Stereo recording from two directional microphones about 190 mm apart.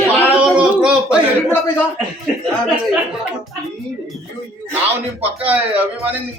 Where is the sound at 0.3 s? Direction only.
5° right (ahead or behind).